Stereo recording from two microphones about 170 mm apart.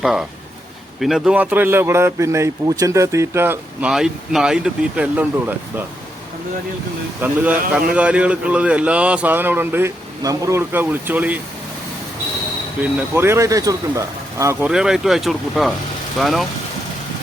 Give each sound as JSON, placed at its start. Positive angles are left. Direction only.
{"t": 0.0, "sound": "a man's voice", "side_deg": 0}
{"t": 7.2, "sound": "a man's voice", "side_deg": -10}
{"t": 12.8, "sound": "a man's voice", "side_deg": -10}
{"t": 14.7, "sound": "speech", "side_deg": -5}